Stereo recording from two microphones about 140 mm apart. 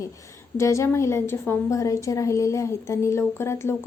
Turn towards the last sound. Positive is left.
turn(degrees=20)  # may be behind; listen again after turning